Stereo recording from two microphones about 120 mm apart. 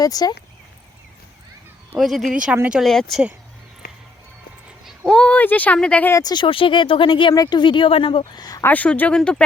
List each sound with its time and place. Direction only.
0.0 s speech: 30° left (ahead or behind)
2.0 s speech: centre (ahead or behind)
4.9 s a child's voice: 10° left (ahead or behind)
6.1 s speech: 35° left (ahead or behind)
8.3 s speech: 35° left (ahead or behind)
8.6 s speech: 15° left (ahead or behind)